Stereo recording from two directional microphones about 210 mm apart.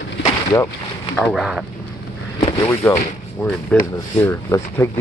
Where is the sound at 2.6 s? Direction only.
10° left (ahead or behind).